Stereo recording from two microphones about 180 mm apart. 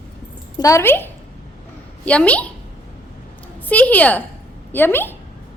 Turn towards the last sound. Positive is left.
turn(degrees=10)  # may be behind; listen again after turning